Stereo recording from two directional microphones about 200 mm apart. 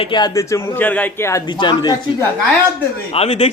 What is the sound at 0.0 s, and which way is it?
A man's voice, 20° left (ahead or behind).